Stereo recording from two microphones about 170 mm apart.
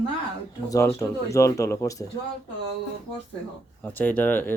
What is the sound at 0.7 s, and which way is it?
Speech, 15° left (ahead or behind).